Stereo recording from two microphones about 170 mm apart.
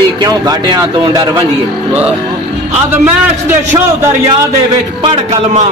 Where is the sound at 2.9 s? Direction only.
10° right (ahead or behind).